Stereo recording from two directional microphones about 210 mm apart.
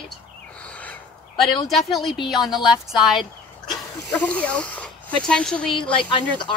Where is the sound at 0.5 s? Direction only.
5° left (ahead or behind).